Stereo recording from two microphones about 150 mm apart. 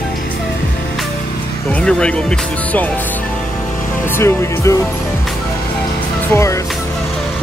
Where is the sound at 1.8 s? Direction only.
5° left (ahead or behind).